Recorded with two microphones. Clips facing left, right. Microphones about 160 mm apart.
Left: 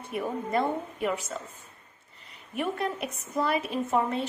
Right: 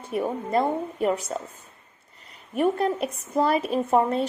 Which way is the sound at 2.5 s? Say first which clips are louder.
Right 7 dB; 40° right (ahead or behind).